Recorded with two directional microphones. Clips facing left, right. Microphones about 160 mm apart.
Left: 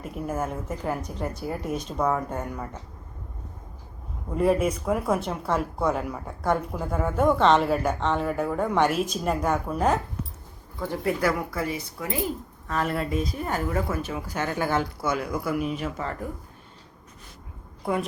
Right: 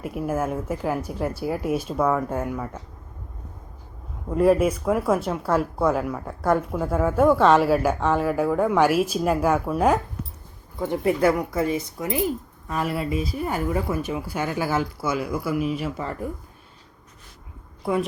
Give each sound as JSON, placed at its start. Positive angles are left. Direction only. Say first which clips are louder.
{"t": 0.0, "sound": "a woman's voice", "louder": "right 4 dB", "side_deg": -5}
{"t": 4.4, "sound": "speech", "louder": "right 4 dB", "side_deg": 0}
{"t": 10.8, "sound": "speech", "louder": "right 5 dB", "side_deg": -20}
{"t": 12.6, "sound": "a woman's voice", "louder": "right 1 dB", "side_deg": -10}